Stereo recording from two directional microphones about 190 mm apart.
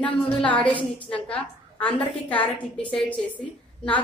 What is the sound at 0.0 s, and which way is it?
A woman's voice, 5° left (ahead or behind).